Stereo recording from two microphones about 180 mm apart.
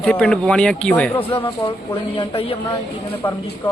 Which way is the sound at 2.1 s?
30° left (ahead or behind).